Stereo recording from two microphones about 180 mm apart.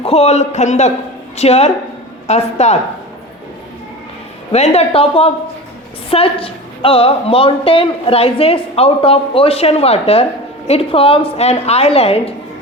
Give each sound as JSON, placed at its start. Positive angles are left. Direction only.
{"t": 0.0, "sound": "a woman's voice", "side_deg": 35}
{"t": 4.5, "sound": "a woman's voice", "side_deg": 35}